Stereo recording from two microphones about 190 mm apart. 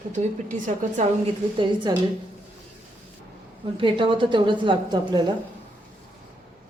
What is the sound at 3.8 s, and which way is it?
A woman's voice, 25° right (ahead or behind).